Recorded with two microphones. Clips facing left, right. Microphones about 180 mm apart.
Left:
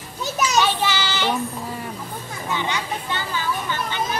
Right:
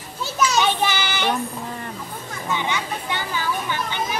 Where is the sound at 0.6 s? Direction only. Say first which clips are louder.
Left 2 dB; 15° right (ahead or behind).